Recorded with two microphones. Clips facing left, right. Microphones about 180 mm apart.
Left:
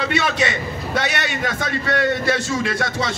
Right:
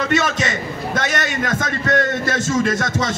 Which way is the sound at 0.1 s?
45° right (ahead or behind).